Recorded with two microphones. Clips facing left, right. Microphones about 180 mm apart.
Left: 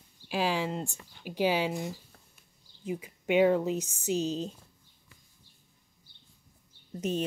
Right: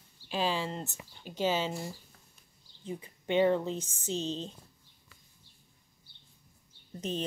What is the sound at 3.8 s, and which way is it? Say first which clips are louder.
Speech: left 5 dB; 30° right (ahead or behind).